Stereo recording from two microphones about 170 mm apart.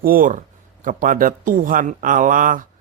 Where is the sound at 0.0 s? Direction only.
55° right (ahead or behind).